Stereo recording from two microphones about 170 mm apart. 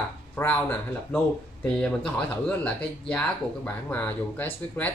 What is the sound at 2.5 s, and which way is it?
Speech, 10° left (ahead or behind).